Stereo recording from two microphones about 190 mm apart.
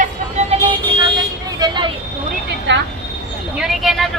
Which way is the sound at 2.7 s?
75° right (ahead or behind).